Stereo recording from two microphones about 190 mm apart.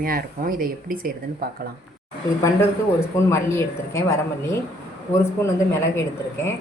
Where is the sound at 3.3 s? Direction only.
15° left (ahead or behind).